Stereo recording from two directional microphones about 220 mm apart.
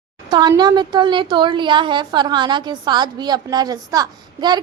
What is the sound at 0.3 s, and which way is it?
A woman's voice, 20° right (ahead or behind).